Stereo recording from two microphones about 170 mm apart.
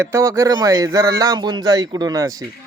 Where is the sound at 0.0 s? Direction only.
15° right (ahead or behind).